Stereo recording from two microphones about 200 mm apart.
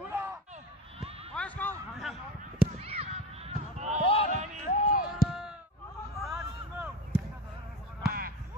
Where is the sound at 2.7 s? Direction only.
30° right (ahead or behind).